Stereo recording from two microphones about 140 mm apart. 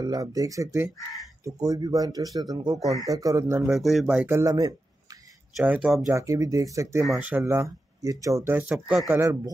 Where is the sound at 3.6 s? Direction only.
Centre (ahead or behind).